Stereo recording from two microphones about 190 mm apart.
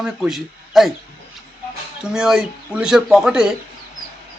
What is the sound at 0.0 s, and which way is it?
Speech, centre (ahead or behind).